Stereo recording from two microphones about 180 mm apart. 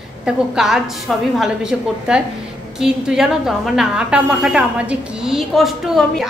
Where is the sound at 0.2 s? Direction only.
5° right (ahead or behind).